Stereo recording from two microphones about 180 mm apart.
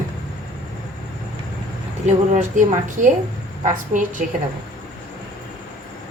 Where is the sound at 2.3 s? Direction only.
45° right (ahead or behind).